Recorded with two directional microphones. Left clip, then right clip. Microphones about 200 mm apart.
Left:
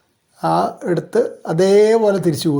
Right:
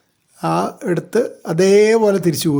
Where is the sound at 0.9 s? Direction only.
20° right (ahead or behind).